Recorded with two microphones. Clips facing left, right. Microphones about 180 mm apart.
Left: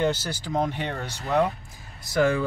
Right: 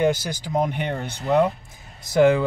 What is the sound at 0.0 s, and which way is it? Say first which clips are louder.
Speech: right 4 dB; 15° right (ahead or behind).